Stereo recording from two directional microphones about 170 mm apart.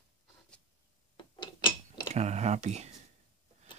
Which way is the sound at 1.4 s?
25° left (ahead or behind).